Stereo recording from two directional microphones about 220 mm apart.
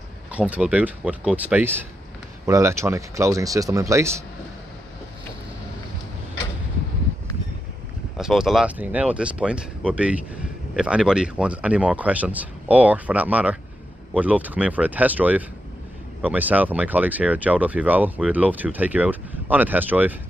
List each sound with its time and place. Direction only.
0.3 s speech: 5° right (ahead or behind)
8.2 s speech: centre (ahead or behind)